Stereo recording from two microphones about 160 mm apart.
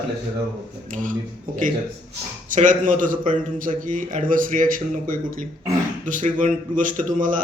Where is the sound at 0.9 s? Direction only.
55° right (ahead or behind).